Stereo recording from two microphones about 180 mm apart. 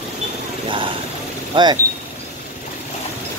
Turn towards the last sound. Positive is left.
turn(degrees=-25)  # may be behind; listen again after turning